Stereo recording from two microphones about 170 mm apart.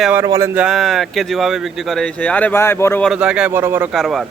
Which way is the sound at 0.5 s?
5° right (ahead or behind).